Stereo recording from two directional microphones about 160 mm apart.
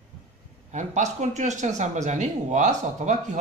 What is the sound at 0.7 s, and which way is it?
A man's voice, 50° right (ahead or behind).